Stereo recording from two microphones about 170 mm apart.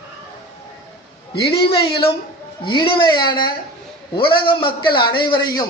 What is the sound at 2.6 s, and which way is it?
A man's voice, 30° left (ahead or behind).